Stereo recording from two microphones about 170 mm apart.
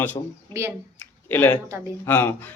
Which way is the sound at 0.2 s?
30° left (ahead or behind).